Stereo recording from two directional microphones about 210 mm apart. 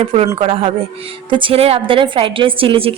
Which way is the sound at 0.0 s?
25° right (ahead or behind).